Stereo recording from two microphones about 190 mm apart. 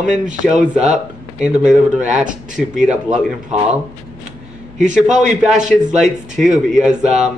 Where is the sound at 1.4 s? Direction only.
5° right (ahead or behind).